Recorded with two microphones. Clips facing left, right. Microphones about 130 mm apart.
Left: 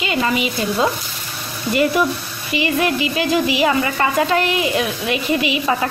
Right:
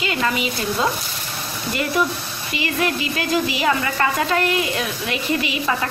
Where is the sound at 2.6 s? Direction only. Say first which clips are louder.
Left 3 dB; 10° left (ahead or behind).